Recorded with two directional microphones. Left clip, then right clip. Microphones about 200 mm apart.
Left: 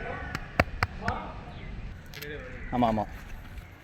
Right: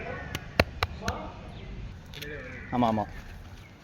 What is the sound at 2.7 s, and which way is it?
Speech, centre (ahead or behind).